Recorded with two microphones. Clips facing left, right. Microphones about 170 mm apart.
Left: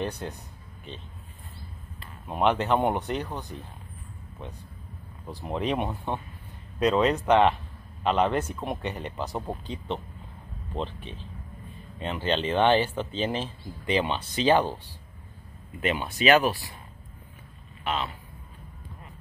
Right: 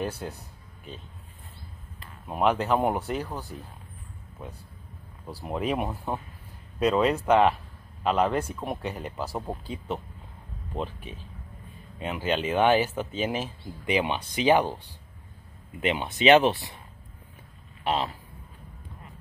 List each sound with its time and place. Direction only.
0.2 s speech: 5° right (ahead or behind)
2.2 s speech: centre (ahead or behind)
15.8 s speech: 20° right (ahead or behind)
17.8 s speech: 35° right (ahead or behind)